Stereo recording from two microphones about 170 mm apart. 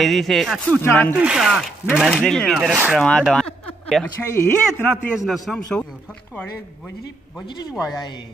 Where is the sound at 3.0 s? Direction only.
5° left (ahead or behind).